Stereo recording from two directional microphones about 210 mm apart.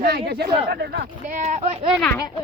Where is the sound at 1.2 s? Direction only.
35° right (ahead or behind).